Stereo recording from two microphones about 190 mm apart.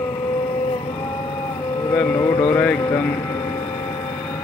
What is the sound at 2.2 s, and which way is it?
Mantra, 25° left (ahead or behind).